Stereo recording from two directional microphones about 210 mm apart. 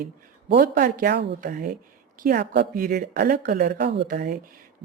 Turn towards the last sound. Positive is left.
turn(degrees=-50)  # may be behind; listen again after turning